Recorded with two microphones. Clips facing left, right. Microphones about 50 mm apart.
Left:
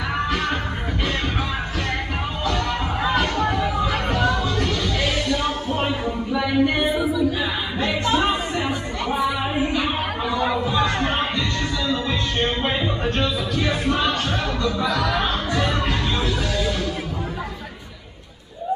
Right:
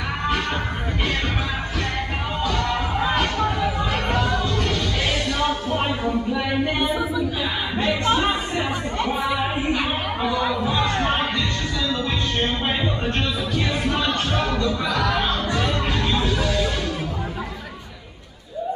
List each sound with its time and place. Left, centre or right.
6.3 s a sound: centre
11.0 s music: centre
15.5 s music: centre
16.3 s music: right